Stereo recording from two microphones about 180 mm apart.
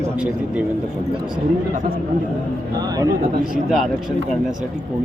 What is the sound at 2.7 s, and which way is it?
Speech, 20° right (ahead or behind).